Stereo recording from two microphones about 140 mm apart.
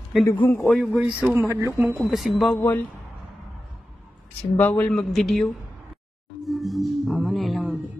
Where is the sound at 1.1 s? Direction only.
10° right (ahead or behind).